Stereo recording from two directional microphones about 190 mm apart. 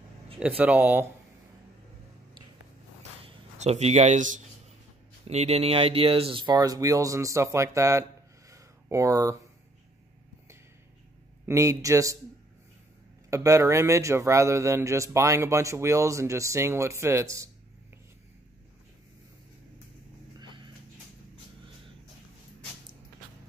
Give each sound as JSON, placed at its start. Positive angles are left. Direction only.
{"t": 0.4, "sound": "a man's voice", "side_deg": -10}
{"t": 3.5, "sound": "speech", "side_deg": -35}
{"t": 8.5, "sound": "a sound", "side_deg": -15}
{"t": 11.4, "sound": "a man's voice", "side_deg": -15}
{"t": 13.3, "sound": "a man's voice", "side_deg": -15}
{"t": 20.3, "sound": "a sound", "side_deg": -25}